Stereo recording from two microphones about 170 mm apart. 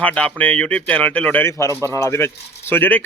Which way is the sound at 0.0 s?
5° left (ahead or behind).